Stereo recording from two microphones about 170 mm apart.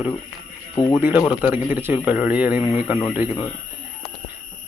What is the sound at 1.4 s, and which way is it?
Speech, 10° right (ahead or behind).